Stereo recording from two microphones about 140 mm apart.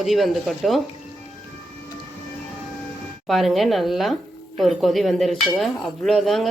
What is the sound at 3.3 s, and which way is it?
A woman's voice, centre (ahead or behind).